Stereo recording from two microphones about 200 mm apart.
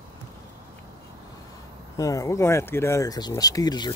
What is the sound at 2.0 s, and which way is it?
Speech, 15° left (ahead or behind).